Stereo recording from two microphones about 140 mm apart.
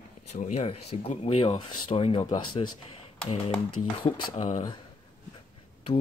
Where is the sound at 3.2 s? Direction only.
45° left (ahead or behind).